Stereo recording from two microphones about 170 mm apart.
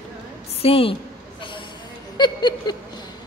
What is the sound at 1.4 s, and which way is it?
Vehicle, 30° left (ahead or behind).